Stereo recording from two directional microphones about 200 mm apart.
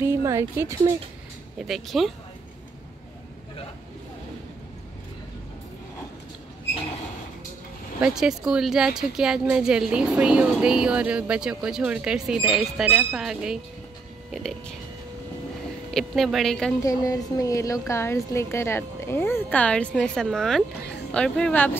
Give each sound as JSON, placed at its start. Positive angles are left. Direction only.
{"t": 0.0, "sound": "speech", "side_deg": -15}
{"t": 1.6, "sound": "speech", "side_deg": 0}
{"t": 8.0, "sound": "speech", "side_deg": 0}
{"t": 15.9, "sound": "speech", "side_deg": 0}
{"t": 16.8, "sound": "speech", "side_deg": 15}